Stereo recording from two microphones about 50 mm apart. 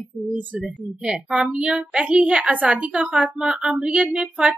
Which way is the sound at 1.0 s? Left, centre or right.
Centre.